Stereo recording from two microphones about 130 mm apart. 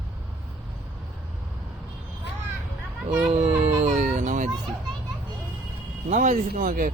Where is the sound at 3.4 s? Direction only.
60° right (ahead or behind).